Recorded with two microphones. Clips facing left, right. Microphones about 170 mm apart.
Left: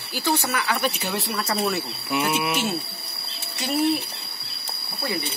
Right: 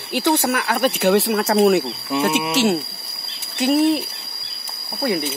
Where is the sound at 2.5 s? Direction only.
85° right.